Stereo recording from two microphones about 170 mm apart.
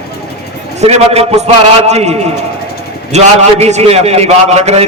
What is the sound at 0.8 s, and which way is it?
A man's voice, 40° right (ahead or behind).